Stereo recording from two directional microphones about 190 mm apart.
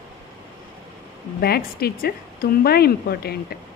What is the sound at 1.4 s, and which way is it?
Speech, 55° left (ahead or behind).